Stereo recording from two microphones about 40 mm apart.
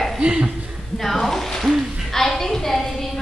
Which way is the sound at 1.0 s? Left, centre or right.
Centre.